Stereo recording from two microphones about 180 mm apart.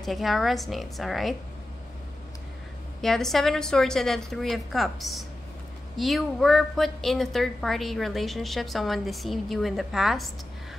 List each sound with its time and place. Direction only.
0.0 s a woman's voice: centre (ahead or behind)
3.0 s a woman's voice: centre (ahead or behind)